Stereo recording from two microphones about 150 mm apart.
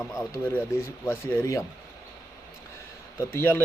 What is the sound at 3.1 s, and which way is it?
Speech, 15° left (ahead or behind).